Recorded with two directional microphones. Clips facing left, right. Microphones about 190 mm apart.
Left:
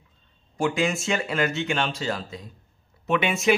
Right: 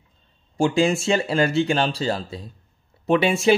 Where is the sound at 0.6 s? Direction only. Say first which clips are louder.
Right 5 dB; 30° right (ahead or behind).